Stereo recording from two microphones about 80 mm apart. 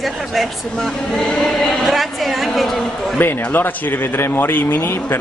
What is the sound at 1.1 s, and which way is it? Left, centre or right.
A woman's voice, centre.